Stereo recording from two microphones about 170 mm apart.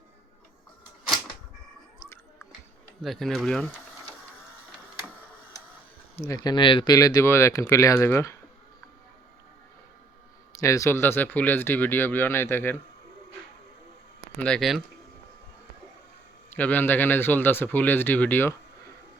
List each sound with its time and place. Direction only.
3.0 s speech: centre (ahead or behind)
6.2 s speech: 20° left (ahead or behind)
10.6 s speech: 20° left (ahead or behind)
14.3 s speech: 5° left (ahead or behind)
16.6 s speech: 10° left (ahead or behind)